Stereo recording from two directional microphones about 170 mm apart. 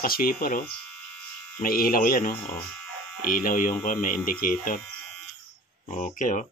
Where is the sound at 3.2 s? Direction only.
55° left (ahead or behind).